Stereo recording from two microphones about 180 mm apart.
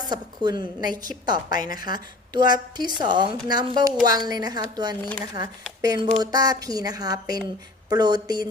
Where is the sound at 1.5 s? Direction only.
50° left (ahead or behind).